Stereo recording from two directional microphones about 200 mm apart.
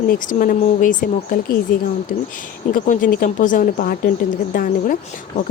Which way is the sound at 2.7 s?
40° left (ahead or behind).